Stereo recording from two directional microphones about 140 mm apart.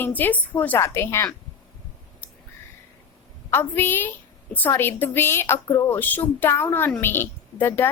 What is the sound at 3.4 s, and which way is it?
A woman's voice, 15° left (ahead or behind).